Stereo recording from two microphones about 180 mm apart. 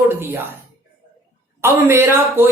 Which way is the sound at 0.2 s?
10° right (ahead or behind).